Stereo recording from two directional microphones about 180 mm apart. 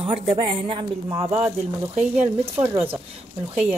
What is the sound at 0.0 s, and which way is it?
Speech, 30° right (ahead or behind).